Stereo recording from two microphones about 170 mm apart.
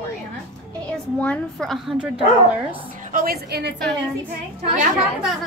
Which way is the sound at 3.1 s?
60° right (ahead or behind).